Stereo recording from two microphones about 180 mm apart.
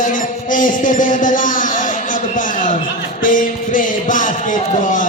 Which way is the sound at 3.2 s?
50° left (ahead or behind).